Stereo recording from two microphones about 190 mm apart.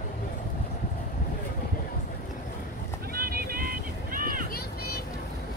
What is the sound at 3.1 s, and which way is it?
Vehicle, 50° right (ahead or behind).